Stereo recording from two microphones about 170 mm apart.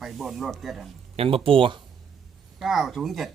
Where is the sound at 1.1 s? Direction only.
35° right (ahead or behind).